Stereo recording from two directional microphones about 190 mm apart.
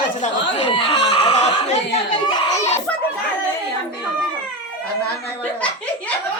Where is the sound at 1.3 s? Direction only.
35° left (ahead or behind).